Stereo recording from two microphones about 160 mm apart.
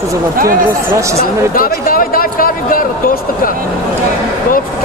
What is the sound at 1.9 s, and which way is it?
Speech, 65° left (ahead or behind).